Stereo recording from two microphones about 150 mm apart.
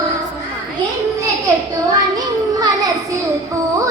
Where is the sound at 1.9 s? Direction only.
25° right (ahead or behind).